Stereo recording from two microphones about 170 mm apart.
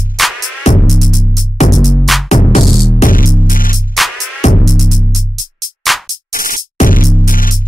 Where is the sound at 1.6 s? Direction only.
40° left (ahead or behind).